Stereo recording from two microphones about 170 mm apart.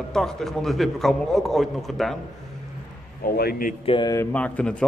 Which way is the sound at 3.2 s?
60° left (ahead or behind).